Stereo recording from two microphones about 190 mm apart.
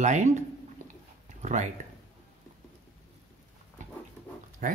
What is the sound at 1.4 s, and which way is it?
Speech, 40° right (ahead or behind).